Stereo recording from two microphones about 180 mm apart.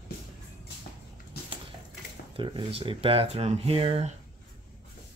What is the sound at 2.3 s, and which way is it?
Speech, 30° right (ahead or behind).